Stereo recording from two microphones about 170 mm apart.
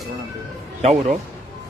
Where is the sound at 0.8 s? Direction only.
40° right (ahead or behind).